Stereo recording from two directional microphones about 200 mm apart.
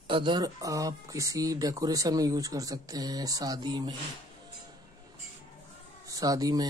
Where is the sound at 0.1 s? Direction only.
25° right (ahead or behind).